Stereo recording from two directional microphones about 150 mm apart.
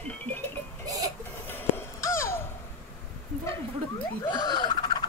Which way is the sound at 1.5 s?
20° left (ahead or behind).